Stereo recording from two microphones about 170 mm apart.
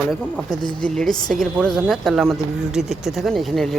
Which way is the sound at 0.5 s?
25° left (ahead or behind).